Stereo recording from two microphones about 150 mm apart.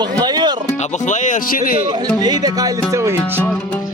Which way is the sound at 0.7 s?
50° left (ahead or behind).